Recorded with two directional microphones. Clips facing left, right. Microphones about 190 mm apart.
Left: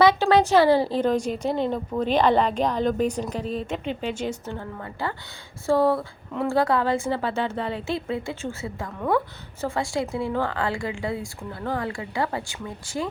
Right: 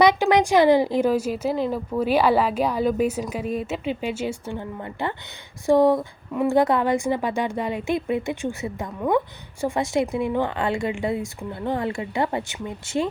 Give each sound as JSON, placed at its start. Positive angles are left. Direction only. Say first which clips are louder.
{"t": 0.0, "sound": "a woman's voice", "louder": "even", "side_deg": -15}